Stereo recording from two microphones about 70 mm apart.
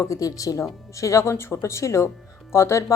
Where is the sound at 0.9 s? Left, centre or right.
Left.